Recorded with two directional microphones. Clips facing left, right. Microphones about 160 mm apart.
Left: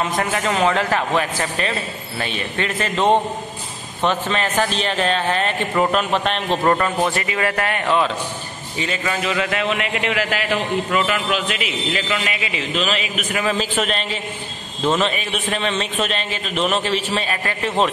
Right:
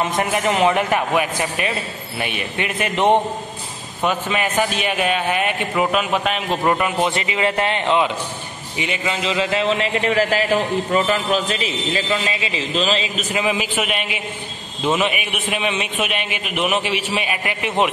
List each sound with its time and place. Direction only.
0.1 s a man's voice: 20° right (ahead or behind)
7.0 s a man's voice: 20° right (ahead or behind)
13.5 s a man's voice: 10° right (ahead or behind)